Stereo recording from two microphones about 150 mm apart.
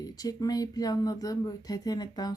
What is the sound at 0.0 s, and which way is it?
Speech, 25° left (ahead or behind).